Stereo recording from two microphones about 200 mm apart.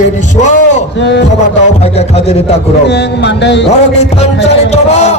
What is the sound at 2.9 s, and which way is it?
Music, 60° left (ahead or behind).